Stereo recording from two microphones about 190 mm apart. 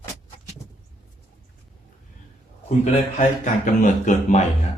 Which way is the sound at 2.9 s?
40° left (ahead or behind).